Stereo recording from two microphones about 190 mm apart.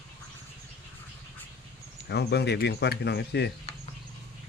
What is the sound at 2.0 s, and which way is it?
Speech, 60° left (ahead or behind).